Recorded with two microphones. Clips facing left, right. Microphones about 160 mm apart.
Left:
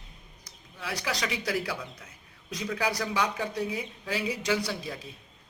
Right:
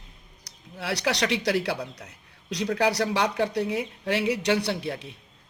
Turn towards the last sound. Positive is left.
turn(degrees=-65)  # may be behind; listen again after turning